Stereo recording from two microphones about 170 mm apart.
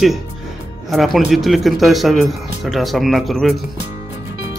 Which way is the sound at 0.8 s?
Centre (ahead or behind).